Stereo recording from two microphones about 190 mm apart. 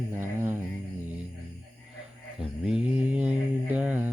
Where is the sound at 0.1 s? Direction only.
15° right (ahead or behind).